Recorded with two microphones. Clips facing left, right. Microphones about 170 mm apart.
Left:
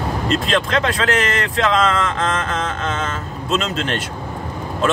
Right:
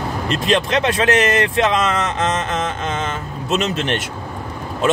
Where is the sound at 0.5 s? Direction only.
20° right (ahead or behind).